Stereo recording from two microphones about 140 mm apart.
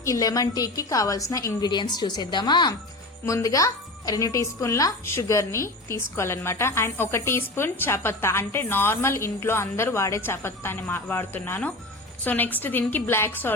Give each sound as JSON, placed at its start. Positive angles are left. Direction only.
{"t": 0.0, "sound": "a woman's voice", "side_deg": 25}